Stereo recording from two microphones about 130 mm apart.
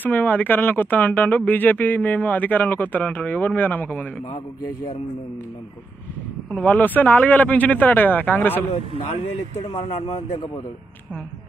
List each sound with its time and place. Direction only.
0.0 s speech: 15° left (ahead or behind)
6.5 s speech: 15° left (ahead or behind)
9.6 s speech: 50° left (ahead or behind)